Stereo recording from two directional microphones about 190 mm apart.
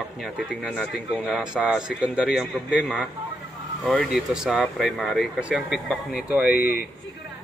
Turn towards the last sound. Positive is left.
turn(degrees=50)  # may be behind; listen again after turning